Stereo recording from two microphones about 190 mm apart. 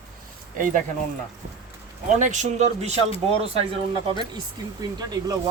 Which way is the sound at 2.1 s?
40° right (ahead or behind).